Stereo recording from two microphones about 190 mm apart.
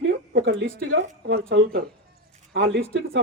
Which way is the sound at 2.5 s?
70° right (ahead or behind).